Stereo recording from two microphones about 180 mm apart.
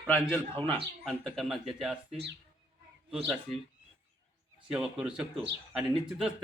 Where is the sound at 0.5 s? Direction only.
30° right (ahead or behind).